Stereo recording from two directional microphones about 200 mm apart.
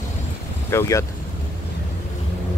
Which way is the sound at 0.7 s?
15° left (ahead or behind).